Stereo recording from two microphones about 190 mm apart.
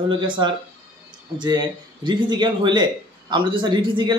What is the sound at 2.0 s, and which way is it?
A man's voice, 25° right (ahead or behind).